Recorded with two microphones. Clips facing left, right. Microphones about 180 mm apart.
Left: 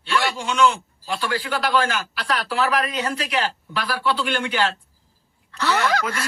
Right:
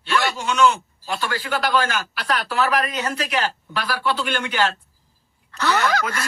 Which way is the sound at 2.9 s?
45° right (ahead or behind).